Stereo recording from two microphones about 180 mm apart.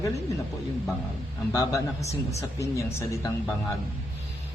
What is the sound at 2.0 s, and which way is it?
Speech, 35° left (ahead or behind).